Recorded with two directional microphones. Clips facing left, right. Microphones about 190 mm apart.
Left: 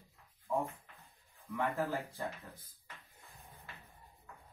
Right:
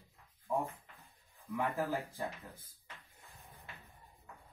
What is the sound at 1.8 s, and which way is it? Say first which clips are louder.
Speech: even; 15° right (ahead or behind).